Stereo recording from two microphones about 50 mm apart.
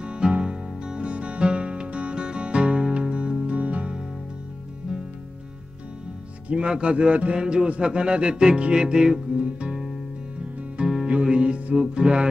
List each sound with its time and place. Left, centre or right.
0.0 s music: right
6.5 s music: right